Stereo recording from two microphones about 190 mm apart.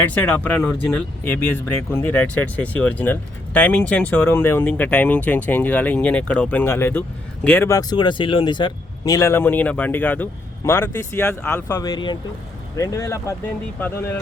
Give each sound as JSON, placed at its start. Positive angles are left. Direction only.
{"t": 0.0, "sound": "speech", "side_deg": 10}